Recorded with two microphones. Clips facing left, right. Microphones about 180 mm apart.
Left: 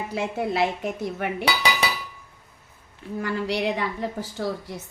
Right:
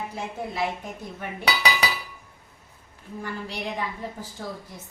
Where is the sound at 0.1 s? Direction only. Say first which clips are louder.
Left 7 dB; 80° left.